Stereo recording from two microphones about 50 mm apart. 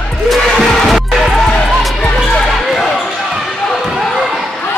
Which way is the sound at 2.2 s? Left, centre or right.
Centre.